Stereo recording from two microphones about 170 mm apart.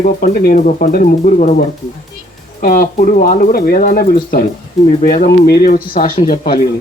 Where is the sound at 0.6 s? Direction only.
50° left (ahead or behind).